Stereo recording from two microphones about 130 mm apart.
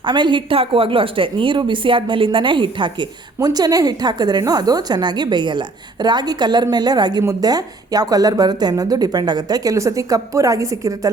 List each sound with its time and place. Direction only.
0.0 s a woman's voice: 35° right (ahead or behind)